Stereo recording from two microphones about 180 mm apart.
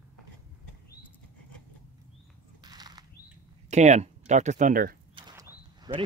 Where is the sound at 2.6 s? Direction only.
20° right (ahead or behind).